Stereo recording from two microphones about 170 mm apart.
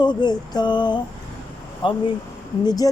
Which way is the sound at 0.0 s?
25° left (ahead or behind).